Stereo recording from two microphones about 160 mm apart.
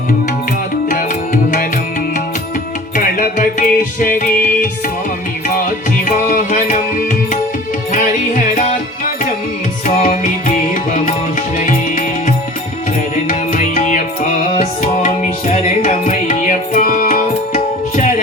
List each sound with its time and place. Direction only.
0.9 s music: 55° left (ahead or behind)
2.9 s music: 55° left (ahead or behind)
6.1 s music: 50° left (ahead or behind)
7.9 s music: 50° left (ahead or behind)
9.8 s music: 50° left (ahead or behind)
11.6 s music: 50° left (ahead or behind)